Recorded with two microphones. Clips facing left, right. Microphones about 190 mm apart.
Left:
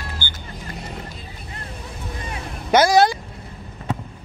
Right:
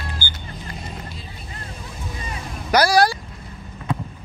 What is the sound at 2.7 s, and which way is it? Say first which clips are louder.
Speech: left 2 dB; 20° left (ahead or behind).